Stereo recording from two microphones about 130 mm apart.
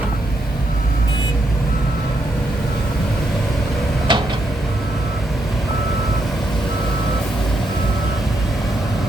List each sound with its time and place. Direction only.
4.1 s tick-tock: 35° right (ahead or behind)